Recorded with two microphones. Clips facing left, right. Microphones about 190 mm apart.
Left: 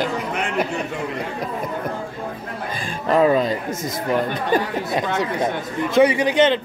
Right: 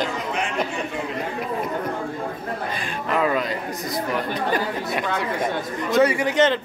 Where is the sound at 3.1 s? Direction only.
30° left (ahead or behind).